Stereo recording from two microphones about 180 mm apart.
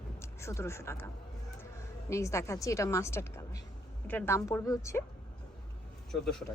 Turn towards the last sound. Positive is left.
turn(degrees=0)  # may be behind; listen again after turning